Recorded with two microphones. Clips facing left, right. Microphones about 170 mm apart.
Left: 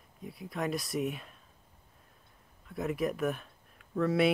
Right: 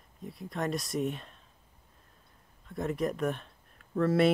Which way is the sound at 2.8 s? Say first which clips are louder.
Right 1 dB; centre (ahead or behind).